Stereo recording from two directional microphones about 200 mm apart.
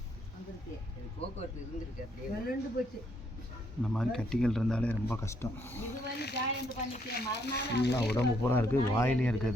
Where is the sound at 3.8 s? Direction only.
5° left (ahead or behind).